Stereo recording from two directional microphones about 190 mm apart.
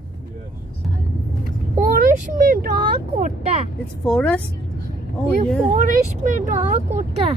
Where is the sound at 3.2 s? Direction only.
40° right (ahead or behind).